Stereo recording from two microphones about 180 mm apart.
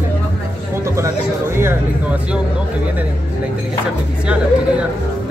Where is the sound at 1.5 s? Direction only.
15° right (ahead or behind).